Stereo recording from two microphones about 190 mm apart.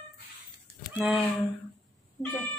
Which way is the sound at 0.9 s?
Centre (ahead or behind).